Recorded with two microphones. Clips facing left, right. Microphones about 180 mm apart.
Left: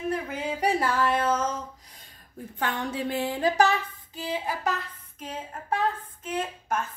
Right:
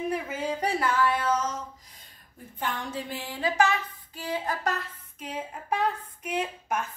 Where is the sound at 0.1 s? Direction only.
Centre (ahead or behind).